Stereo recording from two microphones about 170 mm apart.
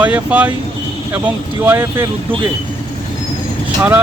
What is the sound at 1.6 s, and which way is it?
Speech, 15° right (ahead or behind).